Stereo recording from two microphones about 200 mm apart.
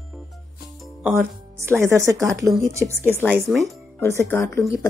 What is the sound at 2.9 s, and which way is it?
Speech, 10° left (ahead or behind).